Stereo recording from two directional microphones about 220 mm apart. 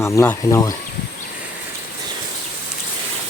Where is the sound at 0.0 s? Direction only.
10° left (ahead or behind).